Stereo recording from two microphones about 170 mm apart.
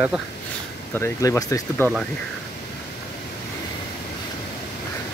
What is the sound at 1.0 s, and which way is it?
Speech, 15° left (ahead or behind).